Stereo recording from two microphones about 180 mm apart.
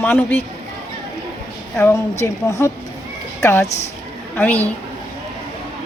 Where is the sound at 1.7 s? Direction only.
15° left (ahead or behind).